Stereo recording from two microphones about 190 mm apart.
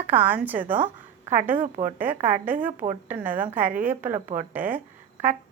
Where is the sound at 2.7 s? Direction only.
40° right (ahead or behind).